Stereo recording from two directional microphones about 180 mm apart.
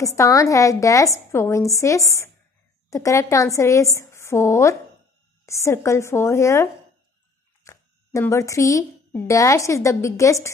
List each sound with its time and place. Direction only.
0.0 s a woman's voice: 15° left (ahead or behind)